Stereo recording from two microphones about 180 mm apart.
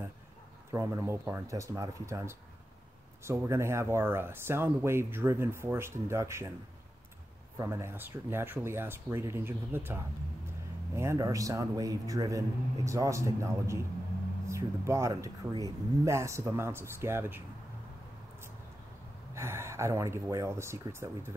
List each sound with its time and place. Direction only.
0.7 s speech: 15° right (ahead or behind)
7.5 s speech: 15° right (ahead or behind)
19.3 s speech: 15° right (ahead or behind)